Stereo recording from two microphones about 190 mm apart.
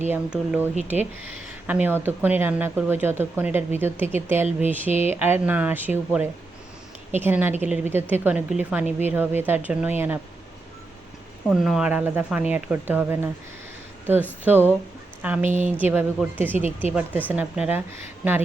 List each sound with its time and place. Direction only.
0.1 s speech: 10° right (ahead or behind)
11.4 s speech: centre (ahead or behind)
14.4 s speech: 10° right (ahead or behind)
15.4 s speech: 40° right (ahead or behind)
15.8 s speech: 10° right (ahead or behind)